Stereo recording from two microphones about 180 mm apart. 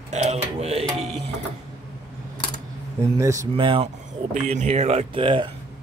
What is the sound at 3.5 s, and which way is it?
Speech, 30° right (ahead or behind).